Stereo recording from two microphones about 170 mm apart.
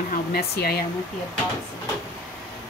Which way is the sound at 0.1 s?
65° left (ahead or behind).